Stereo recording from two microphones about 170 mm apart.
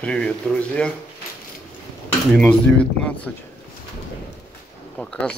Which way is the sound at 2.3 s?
5° left (ahead or behind).